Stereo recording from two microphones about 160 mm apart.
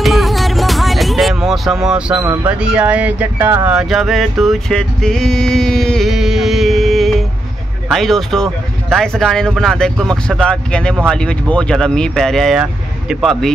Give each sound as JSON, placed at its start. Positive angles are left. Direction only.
{"t": 0.0, "sound": "music", "side_deg": 0}
{"t": 7.9, "sound": "speech", "side_deg": 0}